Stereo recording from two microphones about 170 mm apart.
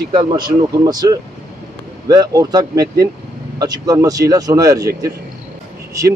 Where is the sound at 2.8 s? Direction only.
70° right (ahead or behind).